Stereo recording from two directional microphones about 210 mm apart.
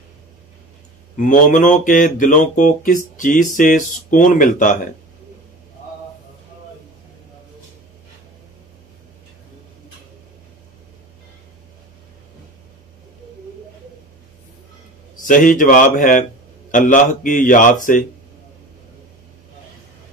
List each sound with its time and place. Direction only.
1.1 s speech: 40° left (ahead or behind)
15.2 s speech: 40° left (ahead or behind)